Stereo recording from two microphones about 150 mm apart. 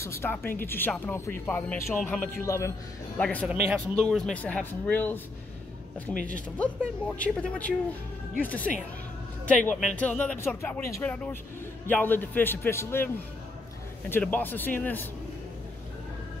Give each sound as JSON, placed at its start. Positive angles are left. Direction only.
{"t": 0.0, "sound": "a man's voice", "side_deg": 15}
{"t": 3.4, "sound": "speech", "side_deg": -10}
{"t": 3.9, "sound": "speech", "side_deg": 5}
{"t": 6.2, "sound": "speech", "side_deg": 10}
{"t": 9.8, "sound": "speech", "side_deg": 5}